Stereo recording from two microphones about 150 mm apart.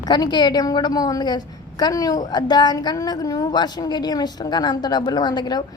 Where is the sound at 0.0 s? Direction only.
30° left (ahead or behind).